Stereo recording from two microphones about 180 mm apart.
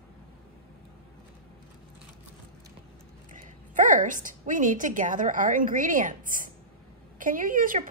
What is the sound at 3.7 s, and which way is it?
A woman's voice, 45° right (ahead or behind).